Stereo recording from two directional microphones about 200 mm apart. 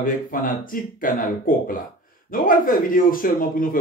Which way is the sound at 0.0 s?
45° left (ahead or behind).